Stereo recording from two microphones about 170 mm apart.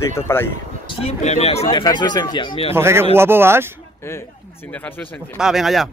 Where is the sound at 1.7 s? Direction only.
25° left (ahead or behind).